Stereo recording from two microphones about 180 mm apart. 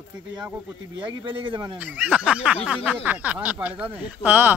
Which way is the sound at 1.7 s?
10° right (ahead or behind).